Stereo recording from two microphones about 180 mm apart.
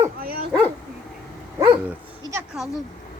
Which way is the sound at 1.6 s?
15° right (ahead or behind).